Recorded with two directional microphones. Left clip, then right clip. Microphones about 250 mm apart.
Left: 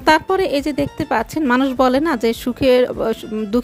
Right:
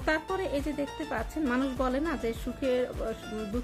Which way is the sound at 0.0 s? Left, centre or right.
Left.